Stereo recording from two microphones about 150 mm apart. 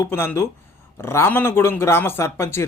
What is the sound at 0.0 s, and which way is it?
Speech, 15° left (ahead or behind).